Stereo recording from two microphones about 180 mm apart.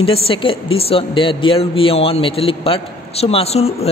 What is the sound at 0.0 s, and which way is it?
A woman's voice, 30° left (ahead or behind).